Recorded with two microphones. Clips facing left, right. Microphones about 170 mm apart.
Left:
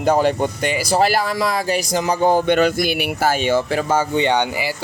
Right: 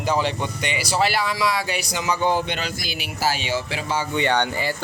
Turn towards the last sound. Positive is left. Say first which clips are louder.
# left 3 dB
turn(degrees=10)  # may be behind; listen again after turning